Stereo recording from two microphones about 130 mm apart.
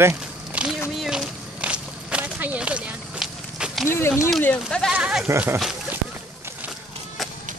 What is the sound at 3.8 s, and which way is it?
Speech, 20° left (ahead or behind).